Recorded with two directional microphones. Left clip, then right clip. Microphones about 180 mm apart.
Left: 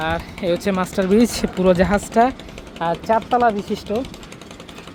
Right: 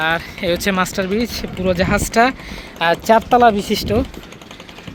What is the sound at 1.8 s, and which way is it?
Speech, 5° left (ahead or behind).